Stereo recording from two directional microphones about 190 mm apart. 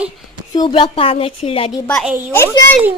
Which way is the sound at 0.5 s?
25° left (ahead or behind).